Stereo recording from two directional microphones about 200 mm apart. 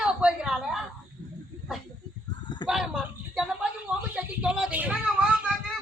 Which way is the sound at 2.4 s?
20° left (ahead or behind).